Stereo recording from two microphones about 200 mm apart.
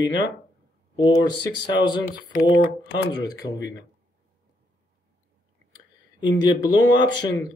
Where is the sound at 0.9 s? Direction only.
20° left (ahead or behind).